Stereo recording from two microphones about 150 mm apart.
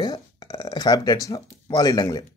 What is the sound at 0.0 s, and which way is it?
Speech, 30° left (ahead or behind).